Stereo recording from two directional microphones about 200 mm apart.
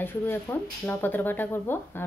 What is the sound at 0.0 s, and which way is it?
Speech, 10° left (ahead or behind).